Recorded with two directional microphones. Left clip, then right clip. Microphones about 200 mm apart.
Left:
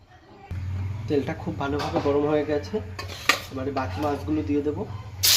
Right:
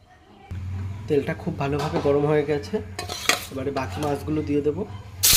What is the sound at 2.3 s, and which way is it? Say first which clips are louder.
Speech: right 2 dB; 30° right (ahead or behind).